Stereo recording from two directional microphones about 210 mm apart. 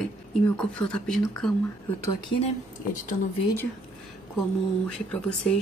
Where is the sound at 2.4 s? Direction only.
35° left (ahead or behind).